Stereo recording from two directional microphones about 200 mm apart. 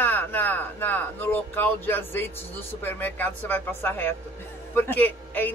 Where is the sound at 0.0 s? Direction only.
10° left (ahead or behind).